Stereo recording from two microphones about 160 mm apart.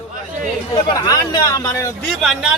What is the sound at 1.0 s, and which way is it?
Speech, 20° left (ahead or behind).